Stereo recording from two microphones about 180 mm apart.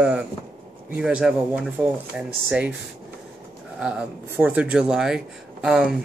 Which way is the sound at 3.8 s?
5° right (ahead or behind).